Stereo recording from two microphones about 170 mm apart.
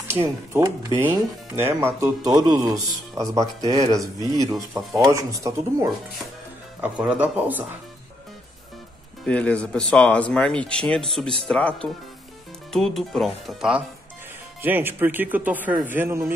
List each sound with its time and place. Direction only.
0.1 s speech: 15° right (ahead or behind)
5.1 s speech: 20° right (ahead or behind)
6.8 s speech: 10° right (ahead or behind)
9.2 s speech: 5° left (ahead or behind); by 16.3 s 15° right (ahead or behind)